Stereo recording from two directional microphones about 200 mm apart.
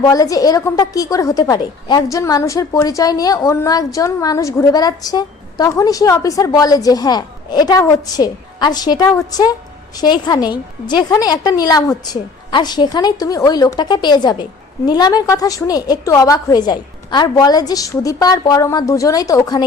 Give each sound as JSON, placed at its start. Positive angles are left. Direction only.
{"t": 0.0, "sound": "a woman's voice", "side_deg": 15}